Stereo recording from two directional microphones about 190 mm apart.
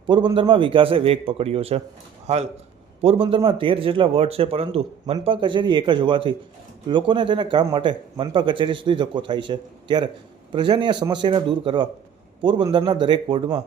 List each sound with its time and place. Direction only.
0.0 s a man's voice: 25° right (ahead or behind)